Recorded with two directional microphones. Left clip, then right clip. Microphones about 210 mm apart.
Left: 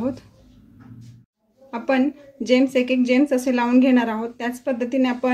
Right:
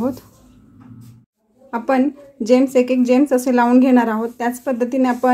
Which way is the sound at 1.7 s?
25° right (ahead or behind).